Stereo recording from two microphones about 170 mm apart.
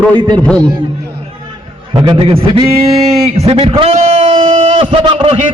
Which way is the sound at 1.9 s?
30° right (ahead or behind).